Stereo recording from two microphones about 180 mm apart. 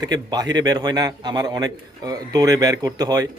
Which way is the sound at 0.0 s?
20° right (ahead or behind).